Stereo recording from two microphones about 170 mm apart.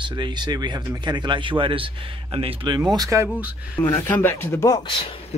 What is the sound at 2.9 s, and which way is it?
Speech, 20° right (ahead or behind).